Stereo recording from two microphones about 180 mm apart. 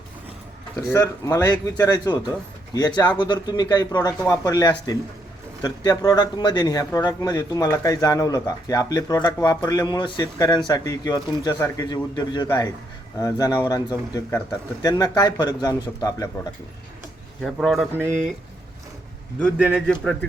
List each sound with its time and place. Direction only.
0.8 s speech: 15° left (ahead or behind)
17.4 s a man's voice: centre (ahead or behind)
19.5 s a man's voice: 5° right (ahead or behind)